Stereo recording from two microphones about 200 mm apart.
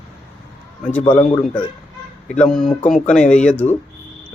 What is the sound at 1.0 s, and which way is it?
Speech, 25° left (ahead or behind).